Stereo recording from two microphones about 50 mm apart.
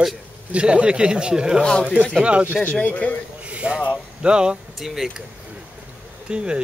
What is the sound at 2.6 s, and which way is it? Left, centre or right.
Speech, left.